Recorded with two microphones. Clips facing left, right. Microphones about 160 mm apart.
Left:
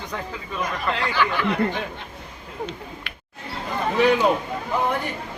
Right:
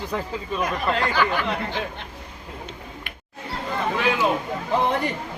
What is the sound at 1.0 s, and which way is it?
Speech, 45° right (ahead or behind).